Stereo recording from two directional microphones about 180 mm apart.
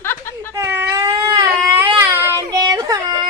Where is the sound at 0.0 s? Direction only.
10° left (ahead or behind).